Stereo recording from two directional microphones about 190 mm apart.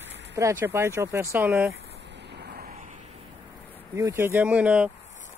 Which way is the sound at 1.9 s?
65° right (ahead or behind).